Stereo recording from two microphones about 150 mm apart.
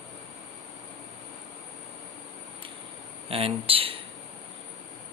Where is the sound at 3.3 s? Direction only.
40° right (ahead or behind).